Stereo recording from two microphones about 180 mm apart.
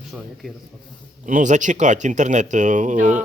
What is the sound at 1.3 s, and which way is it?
Speech, 45° right (ahead or behind).